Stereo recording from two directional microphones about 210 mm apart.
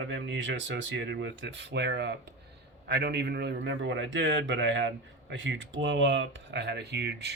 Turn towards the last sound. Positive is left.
turn(degrees=-55)  # may be behind; listen again after turning